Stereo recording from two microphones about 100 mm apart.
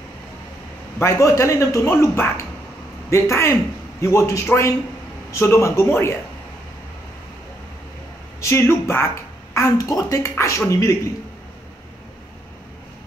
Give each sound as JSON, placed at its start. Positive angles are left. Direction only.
{"t": 0.9, "sound": "a man's voice", "side_deg": 30}
{"t": 8.4, "sound": "a woman's voice", "side_deg": 25}
{"t": 9.8, "sound": "speech", "side_deg": 35}